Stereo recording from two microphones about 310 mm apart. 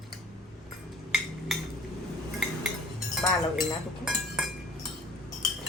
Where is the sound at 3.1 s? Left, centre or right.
Centre.